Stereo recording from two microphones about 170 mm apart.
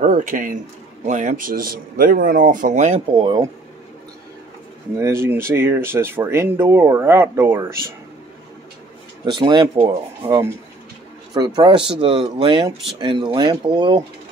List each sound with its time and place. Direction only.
0.0 s speech: 50° right (ahead or behind)
3.2 s speech: 25° right (ahead or behind)
4.9 s speech: 15° right (ahead or behind)
9.2 s speech: 25° right (ahead or behind)